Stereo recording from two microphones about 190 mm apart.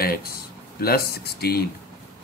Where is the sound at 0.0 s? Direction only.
50° left (ahead or behind).